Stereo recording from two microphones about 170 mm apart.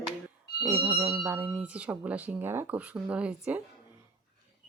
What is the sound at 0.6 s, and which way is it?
A woman's voice, 25° right (ahead or behind).